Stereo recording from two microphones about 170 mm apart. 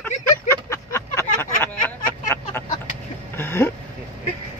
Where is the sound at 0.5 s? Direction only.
15° left (ahead or behind).